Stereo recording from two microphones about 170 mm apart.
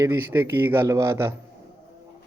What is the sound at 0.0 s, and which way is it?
A man's voice, 15° right (ahead or behind).